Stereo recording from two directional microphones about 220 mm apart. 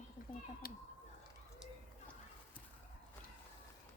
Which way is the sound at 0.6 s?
40° left (ahead or behind).